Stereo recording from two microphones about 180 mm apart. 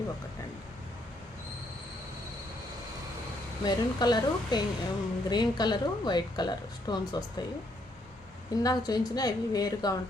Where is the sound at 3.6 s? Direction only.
25° left (ahead or behind).